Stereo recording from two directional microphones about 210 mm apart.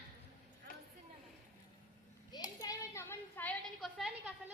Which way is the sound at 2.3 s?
15° left (ahead or behind).